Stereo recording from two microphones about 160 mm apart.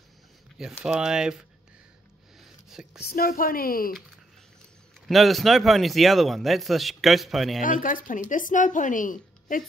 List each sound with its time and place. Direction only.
0.8 s speech: 5° right (ahead or behind)
2.7 s speech: 5° right (ahead or behind)
3.0 s speech: 70° left (ahead or behind)
5.0 s speech: centre (ahead or behind)
7.6 s speech: 55° left (ahead or behind)